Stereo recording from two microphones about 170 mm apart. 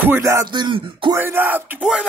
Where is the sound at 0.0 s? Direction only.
15° right (ahead or behind); by 1.1 s 30° right (ahead or behind).